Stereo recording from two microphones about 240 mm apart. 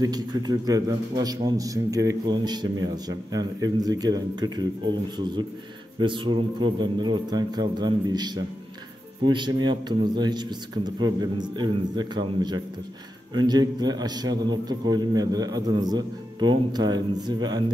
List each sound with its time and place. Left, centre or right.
0.0 s a man's voice: centre
5.9 s a man's voice: centre